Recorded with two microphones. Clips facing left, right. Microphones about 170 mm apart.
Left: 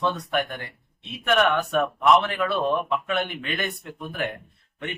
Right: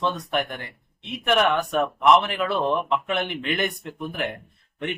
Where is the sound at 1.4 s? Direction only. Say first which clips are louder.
Even; 15° right (ahead or behind).